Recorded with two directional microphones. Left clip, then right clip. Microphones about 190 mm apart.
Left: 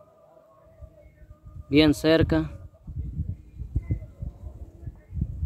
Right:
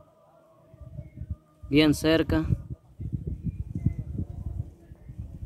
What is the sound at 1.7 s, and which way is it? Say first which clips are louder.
Speech: left 2 dB; centre (ahead or behind).